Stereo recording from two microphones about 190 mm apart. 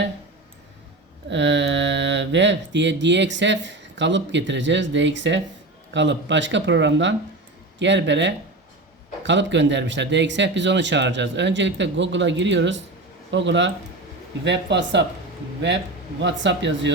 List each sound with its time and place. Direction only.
1.3 s speech: 70° right (ahead or behind)
16.2 s speech: 70° right (ahead or behind)